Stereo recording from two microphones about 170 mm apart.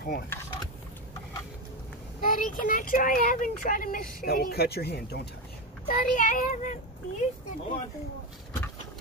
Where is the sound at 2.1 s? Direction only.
55° left (ahead or behind); by 5.3 s 70° left (ahead or behind).